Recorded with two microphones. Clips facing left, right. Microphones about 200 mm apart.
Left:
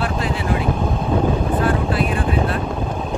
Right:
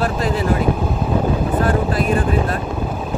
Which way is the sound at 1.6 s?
40° right (ahead or behind).